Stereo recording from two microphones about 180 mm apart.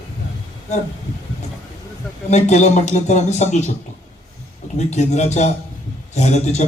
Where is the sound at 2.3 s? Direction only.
40° left (ahead or behind).